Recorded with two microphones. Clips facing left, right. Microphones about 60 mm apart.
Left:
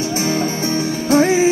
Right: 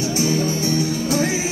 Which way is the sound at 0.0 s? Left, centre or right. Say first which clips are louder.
Left 1 dB; left.